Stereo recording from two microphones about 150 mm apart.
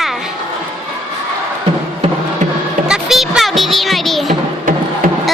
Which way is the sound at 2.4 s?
55° right (ahead or behind).